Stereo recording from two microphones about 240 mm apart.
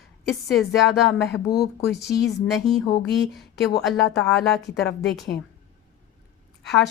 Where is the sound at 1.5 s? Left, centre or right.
Centre.